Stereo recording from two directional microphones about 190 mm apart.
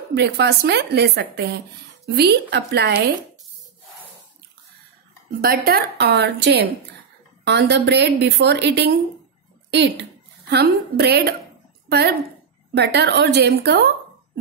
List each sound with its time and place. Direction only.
0.1 s speech: 65° right (ahead or behind)
5.4 s a child's voice: 50° right (ahead or behind)